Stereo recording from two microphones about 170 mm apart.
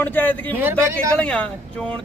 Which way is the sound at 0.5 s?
10° right (ahead or behind).